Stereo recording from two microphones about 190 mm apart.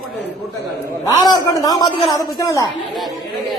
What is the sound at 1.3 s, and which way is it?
A man's voice, 20° left (ahead or behind).